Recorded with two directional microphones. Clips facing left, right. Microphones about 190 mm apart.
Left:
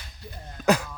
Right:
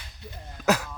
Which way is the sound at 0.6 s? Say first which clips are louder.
Left 2 dB; centre (ahead or behind).